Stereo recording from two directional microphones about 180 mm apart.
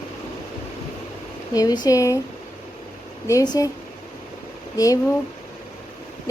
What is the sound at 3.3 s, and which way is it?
Speech, 20° left (ahead or behind).